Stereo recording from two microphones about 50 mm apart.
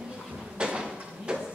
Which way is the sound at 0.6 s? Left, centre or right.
Centre.